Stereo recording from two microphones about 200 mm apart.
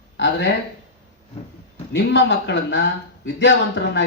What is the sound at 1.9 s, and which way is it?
Speech, 60° left (ahead or behind).